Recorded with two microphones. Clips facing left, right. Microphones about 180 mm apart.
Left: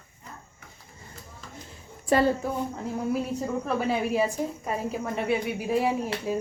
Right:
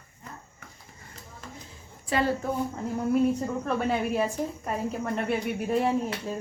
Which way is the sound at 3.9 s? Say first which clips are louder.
Left 2 dB; 5° left (ahead or behind).